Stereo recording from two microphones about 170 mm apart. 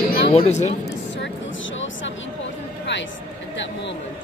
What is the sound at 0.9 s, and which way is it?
Vehicle, 90° left.